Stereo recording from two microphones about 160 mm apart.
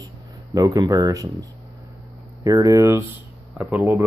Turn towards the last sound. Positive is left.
turn(degrees=0)  # may be behind; listen again after turning